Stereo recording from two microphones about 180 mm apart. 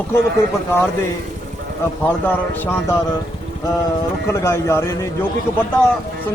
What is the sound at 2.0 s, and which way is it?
Speech, 10° left (ahead or behind).